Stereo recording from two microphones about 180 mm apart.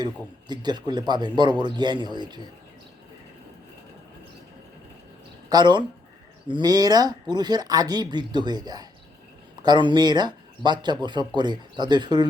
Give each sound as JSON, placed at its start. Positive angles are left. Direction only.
{"t": 0.0, "sound": "a man's voice", "side_deg": -25}
{"t": 5.5, "sound": "a man's voice", "side_deg": -25}